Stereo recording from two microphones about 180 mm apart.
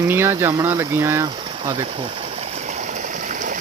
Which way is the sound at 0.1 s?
10° right (ahead or behind).